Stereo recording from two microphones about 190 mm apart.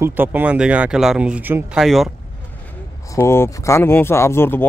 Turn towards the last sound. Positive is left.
turn(degrees=10)  # may be behind; listen again after turning